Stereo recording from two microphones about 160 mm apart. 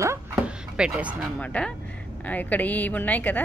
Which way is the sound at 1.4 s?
5° left (ahead or behind).